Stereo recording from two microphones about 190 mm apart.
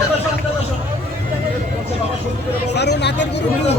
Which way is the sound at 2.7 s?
60° left (ahead or behind).